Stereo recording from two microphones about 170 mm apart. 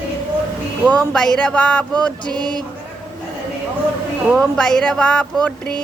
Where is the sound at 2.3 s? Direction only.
25° right (ahead or behind).